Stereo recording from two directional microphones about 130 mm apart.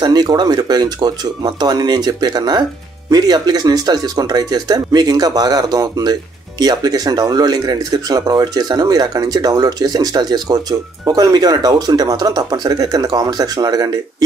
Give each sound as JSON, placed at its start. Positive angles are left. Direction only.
{"t": 0.0, "sound": "speech", "side_deg": -30}